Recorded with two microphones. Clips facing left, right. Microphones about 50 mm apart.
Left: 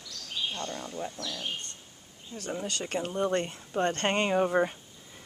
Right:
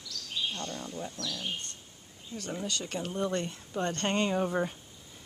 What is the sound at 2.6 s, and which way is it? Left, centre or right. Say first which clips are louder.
Speech: left 3 dB; left.